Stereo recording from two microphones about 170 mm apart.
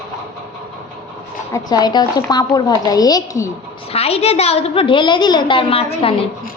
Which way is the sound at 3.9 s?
35° left (ahead or behind).